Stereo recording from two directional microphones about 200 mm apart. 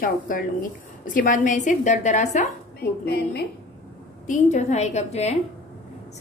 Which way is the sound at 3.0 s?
55° left (ahead or behind).